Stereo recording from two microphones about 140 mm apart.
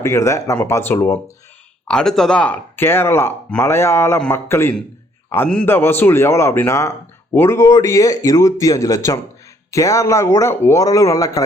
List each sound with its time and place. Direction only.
0.0 s a man's voice: 20° left (ahead or behind)
1.9 s a man's voice: 5° left (ahead or behind); by 11.4 s 25° left (ahead or behind)